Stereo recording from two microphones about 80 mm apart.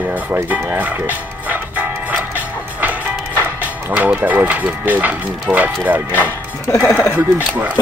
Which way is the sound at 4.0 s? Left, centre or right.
Centre.